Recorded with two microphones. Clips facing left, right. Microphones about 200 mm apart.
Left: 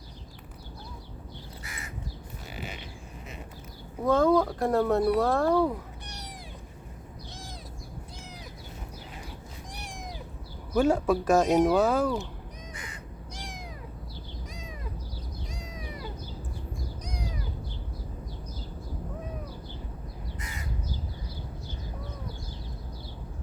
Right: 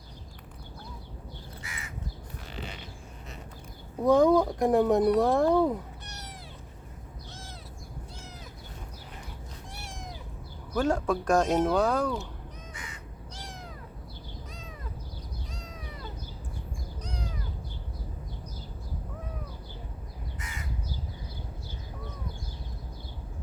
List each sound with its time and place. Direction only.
1.6 s crow: 35° left (ahead or behind)
2.6 s a sound: 10° left (ahead or behind)
4.0 s speech: 15° right (ahead or behind)
6.1 s cat: 15° left (ahead or behind)
9.7 s cat: 15° left (ahead or behind)
10.8 s speech: 10° left (ahead or behind)
12.7 s crow: 35° left (ahead or behind)
13.3 s cat: 15° left (ahead or behind)
15.5 s cat: 10° left (ahead or behind)
17.0 s crow: 15° left (ahead or behind)